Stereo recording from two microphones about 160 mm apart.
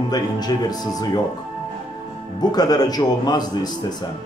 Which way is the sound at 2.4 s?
25° left (ahead or behind).